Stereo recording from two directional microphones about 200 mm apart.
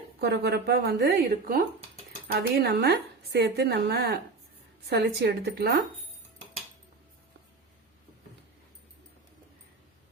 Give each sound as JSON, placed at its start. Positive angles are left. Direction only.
{"t": 0.2, "sound": "a woman's voice", "side_deg": -55}